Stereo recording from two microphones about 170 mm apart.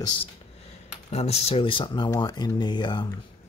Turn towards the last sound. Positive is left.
turn(degrees=25)  # may be behind; listen again after turning